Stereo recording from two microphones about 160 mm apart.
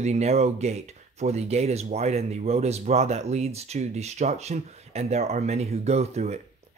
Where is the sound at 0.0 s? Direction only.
45° right (ahead or behind).